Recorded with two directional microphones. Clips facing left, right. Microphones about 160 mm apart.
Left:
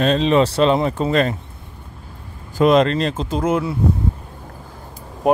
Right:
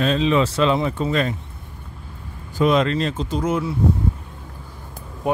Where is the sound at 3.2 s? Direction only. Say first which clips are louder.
Left 3 dB; 90° left.